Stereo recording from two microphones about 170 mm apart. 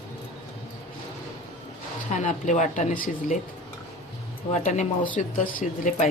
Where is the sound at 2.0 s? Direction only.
45° left (ahead or behind).